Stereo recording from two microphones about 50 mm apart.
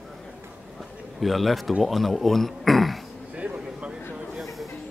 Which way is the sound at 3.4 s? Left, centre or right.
Right.